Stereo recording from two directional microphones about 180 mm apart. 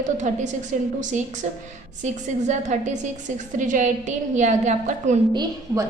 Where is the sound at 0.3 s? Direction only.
45° right (ahead or behind).